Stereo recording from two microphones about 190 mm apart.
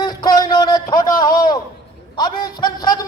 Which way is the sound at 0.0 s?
20° left (ahead or behind).